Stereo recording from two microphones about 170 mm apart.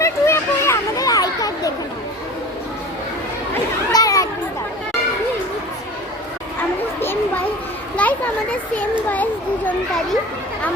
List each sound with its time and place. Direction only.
0.0 s children playing: 15° left (ahead or behind)
3.9 s children playing: 20° left (ahead or behind)
8.0 s children playing: 10° left (ahead or behind)
8.7 s a child's voice: 10° left (ahead or behind)